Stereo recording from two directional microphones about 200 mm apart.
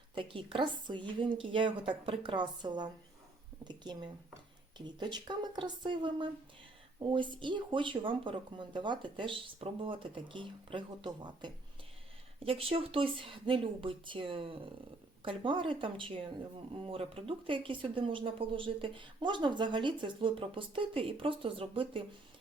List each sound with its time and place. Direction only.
0.1 s speech: 25° right (ahead or behind)